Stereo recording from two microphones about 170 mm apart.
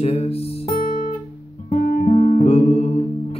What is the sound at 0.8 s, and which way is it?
Guitar, 55° left (ahead or behind).